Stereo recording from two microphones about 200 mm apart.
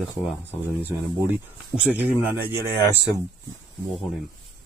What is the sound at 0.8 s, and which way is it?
Speech, 10° right (ahead or behind).